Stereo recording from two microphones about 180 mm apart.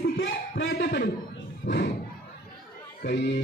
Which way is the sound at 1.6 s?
65° left (ahead or behind).